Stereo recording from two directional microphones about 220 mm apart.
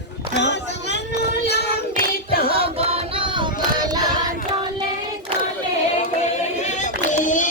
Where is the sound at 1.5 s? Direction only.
45° left (ahead or behind).